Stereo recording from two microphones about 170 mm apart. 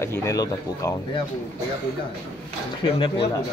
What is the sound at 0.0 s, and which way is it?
Speech, 15° left (ahead or behind).